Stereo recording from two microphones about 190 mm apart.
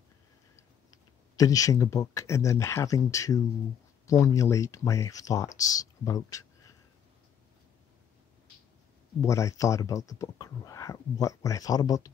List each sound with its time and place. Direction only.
1.3 s speech: 20° left (ahead or behind)
9.2 s speech: 15° left (ahead or behind)